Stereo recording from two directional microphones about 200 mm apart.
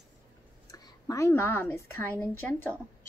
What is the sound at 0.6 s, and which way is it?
A woman's voice, 15° left (ahead or behind).